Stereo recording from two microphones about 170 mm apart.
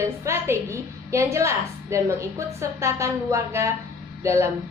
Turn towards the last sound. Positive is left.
turn(degrees=-15)  # may be behind; listen again after turning